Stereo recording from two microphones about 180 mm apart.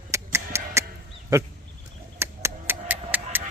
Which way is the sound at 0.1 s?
15° right (ahead or behind).